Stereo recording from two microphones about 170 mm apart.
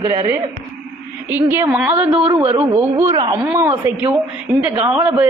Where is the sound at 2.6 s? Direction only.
15° right (ahead or behind).